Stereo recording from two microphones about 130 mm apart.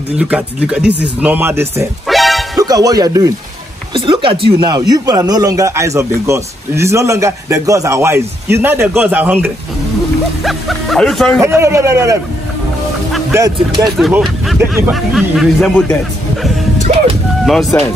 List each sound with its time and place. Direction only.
0.2 s speech: 10° right (ahead or behind)
2.0 s music: centre (ahead or behind)
2.5 s speech: 30° right (ahead or behind)
3.9 s speech: 40° right (ahead or behind)
4.7 s a man's voice: 30° right (ahead or behind); by 9.5 s 15° right (ahead or behind)
10.4 s speech: centre (ahead or behind)
11.4 s a man's voice: 20° right (ahead or behind)
13.3 s a man's voice: 25° right (ahead or behind)
14.9 s speech: centre (ahead or behind)
16.9 s music: 70° right (ahead or behind)
17.5 s speech: centre (ahead or behind)